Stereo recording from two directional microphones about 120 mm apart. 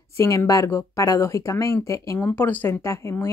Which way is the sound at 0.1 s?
25° left (ahead or behind).